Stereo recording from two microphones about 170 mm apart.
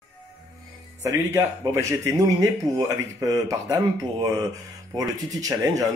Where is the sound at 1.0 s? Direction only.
15° right (ahead or behind).